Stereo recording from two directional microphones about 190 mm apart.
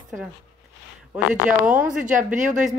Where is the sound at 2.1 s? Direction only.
40° right (ahead or behind).